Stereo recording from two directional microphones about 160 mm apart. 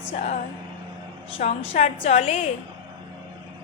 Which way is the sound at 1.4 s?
45° left (ahead or behind).